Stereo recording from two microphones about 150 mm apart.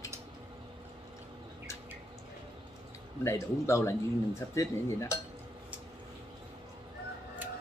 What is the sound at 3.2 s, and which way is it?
A man's voice, 20° left (ahead or behind).